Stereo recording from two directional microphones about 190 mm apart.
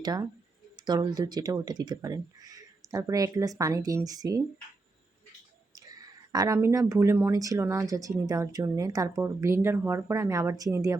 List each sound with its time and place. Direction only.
0.0 s speech: 20° right (ahead or behind)
6.3 s speech: 15° right (ahead or behind)